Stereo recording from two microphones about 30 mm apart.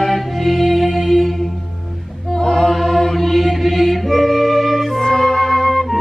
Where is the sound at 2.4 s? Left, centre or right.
Centre.